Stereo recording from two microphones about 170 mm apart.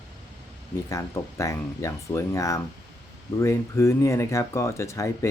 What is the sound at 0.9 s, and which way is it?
Speech, 15° left (ahead or behind).